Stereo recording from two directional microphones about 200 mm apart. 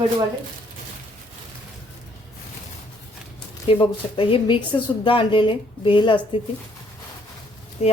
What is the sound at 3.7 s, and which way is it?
A woman's voice, 25° left (ahead or behind).